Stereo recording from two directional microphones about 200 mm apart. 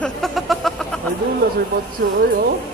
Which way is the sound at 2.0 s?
50° right (ahead or behind).